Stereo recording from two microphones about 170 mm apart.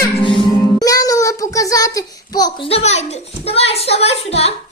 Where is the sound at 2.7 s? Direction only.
40° left (ahead or behind).